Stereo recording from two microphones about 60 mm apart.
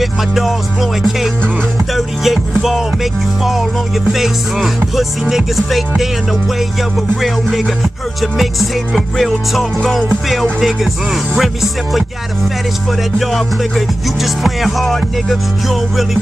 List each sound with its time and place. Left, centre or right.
0.0 s music: centre
11.3 s music: centre
13.2 s music: centre